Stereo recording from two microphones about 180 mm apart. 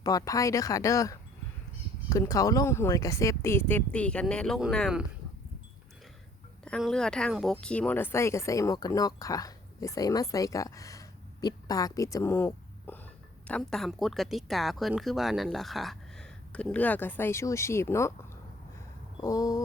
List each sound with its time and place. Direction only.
0.0 s speech: 20° left (ahead or behind); by 5.0 s centre (ahead or behind)
6.7 s speech: 5° left (ahead or behind)
19.2 s speech: 20° left (ahead or behind)